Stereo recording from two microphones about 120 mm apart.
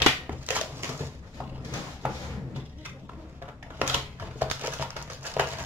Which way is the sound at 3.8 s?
15° right (ahead or behind).